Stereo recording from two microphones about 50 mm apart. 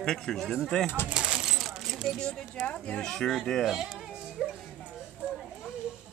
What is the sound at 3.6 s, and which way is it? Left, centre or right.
Speech, centre.